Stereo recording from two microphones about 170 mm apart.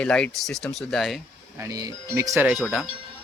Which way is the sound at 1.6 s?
20° right (ahead or behind).